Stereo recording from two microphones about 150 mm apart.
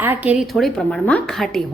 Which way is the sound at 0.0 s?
10° right (ahead or behind).